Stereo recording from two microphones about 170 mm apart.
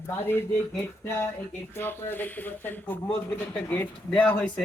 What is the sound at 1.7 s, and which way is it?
Speech, 15° left (ahead or behind).